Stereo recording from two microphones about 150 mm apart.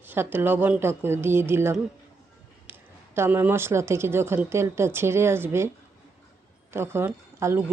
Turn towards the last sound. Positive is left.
turn(degrees=-15)  # may be behind; listen again after turning